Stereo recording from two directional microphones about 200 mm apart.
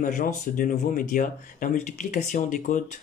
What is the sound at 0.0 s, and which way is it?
Speech, 40° left (ahead or behind).